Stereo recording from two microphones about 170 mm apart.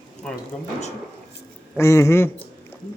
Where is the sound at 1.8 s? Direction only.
15° left (ahead or behind).